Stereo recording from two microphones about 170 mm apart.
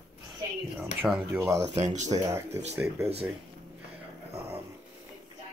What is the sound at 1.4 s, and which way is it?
Speech, 15° right (ahead or behind).